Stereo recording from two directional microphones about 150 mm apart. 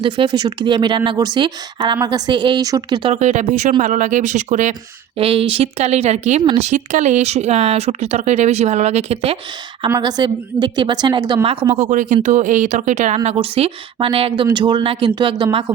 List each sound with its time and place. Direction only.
0.0 s speech: 30° right (ahead or behind)
3.1 s speech: 50° right (ahead or behind)
5.1 s speech: 40° right (ahead or behind)
10.0 s speech: 30° right (ahead or behind)
11.7 s speech: 55° right (ahead or behind)
13.2 s speech: 40° right (ahead or behind)